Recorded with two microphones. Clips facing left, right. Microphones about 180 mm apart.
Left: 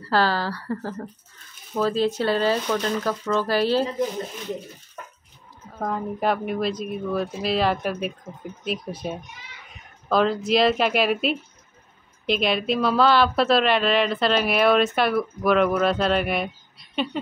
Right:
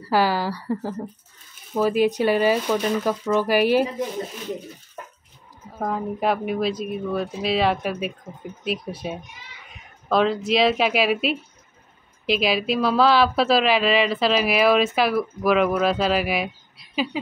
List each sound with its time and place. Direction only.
0.0 s speech: 10° right (ahead or behind)
5.7 s speech: 5° right (ahead or behind)